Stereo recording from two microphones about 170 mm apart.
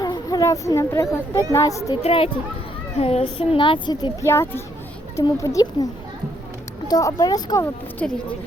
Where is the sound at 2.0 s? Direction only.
35° left (ahead or behind).